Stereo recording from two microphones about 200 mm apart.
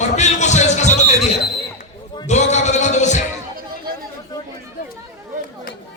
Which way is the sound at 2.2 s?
35° left (ahead or behind).